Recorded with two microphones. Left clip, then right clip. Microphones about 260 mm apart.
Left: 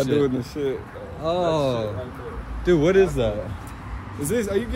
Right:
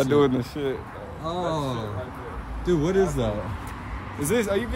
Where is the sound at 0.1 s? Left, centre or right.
Right.